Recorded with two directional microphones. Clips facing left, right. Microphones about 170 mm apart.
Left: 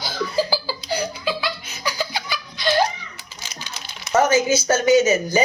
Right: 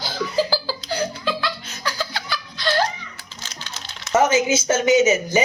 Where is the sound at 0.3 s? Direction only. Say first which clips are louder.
Right 1 dB; 10° left (ahead or behind).